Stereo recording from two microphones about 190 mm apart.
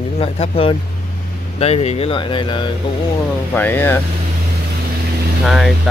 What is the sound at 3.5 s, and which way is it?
Speech, 10° left (ahead or behind).